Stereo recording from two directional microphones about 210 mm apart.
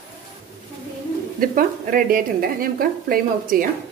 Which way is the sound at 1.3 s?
40° right (ahead or behind).